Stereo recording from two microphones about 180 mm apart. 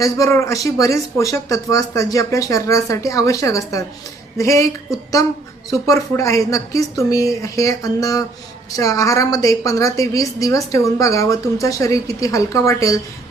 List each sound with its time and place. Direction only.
0.0 s speech: 15° left (ahead or behind)
5.7 s a woman's voice: 15° left (ahead or behind)